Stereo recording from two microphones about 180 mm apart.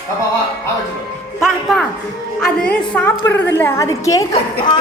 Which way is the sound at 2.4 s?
5° left (ahead or behind).